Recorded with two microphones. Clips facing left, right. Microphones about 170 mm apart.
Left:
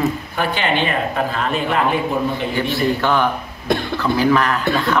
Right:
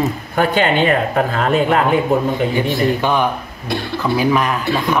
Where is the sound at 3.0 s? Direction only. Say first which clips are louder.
Right 1 dB; 15° right (ahead or behind).